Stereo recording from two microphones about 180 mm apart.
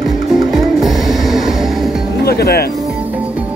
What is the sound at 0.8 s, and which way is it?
Music, centre (ahead or behind).